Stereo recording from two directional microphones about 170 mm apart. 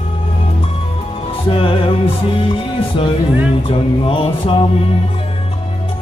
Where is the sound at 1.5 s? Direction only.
30° left (ahead or behind).